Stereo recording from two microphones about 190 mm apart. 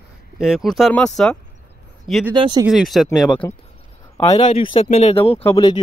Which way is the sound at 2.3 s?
25° right (ahead or behind).